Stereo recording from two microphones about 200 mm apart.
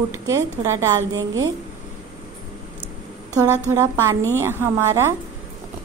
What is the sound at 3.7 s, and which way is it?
A woman's voice, 15° right (ahead or behind).